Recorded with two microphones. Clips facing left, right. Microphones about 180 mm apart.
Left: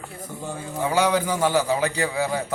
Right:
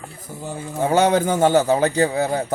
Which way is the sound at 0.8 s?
45° right (ahead or behind).